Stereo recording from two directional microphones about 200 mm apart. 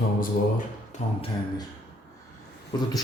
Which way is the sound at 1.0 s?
35° left (ahead or behind).